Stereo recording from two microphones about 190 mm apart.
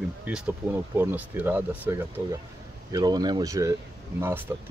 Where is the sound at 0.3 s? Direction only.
5° right (ahead or behind).